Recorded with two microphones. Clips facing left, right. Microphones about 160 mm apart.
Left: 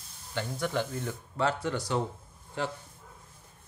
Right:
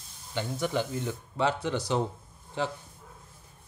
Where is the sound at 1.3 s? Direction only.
20° right (ahead or behind).